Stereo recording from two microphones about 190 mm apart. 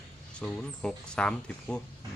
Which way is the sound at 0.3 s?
5° left (ahead or behind).